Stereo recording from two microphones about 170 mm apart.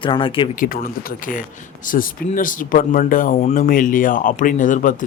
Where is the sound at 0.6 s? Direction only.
55° left (ahead or behind).